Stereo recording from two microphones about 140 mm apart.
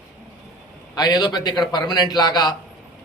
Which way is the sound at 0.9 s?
30° left (ahead or behind).